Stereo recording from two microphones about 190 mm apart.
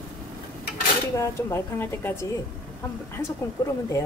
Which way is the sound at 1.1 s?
15° left (ahead or behind).